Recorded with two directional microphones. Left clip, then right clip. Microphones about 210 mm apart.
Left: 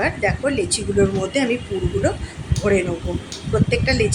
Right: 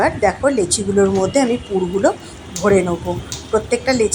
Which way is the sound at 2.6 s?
5° right (ahead or behind).